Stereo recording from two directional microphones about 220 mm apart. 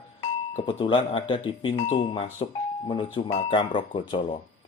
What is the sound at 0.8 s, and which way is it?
Speech, 20° left (ahead or behind).